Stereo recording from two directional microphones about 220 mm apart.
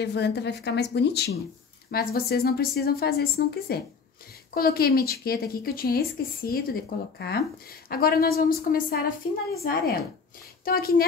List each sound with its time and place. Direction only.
0.0 s speech: 50° left (ahead or behind)